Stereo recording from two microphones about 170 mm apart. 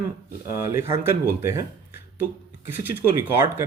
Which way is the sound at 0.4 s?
15° right (ahead or behind).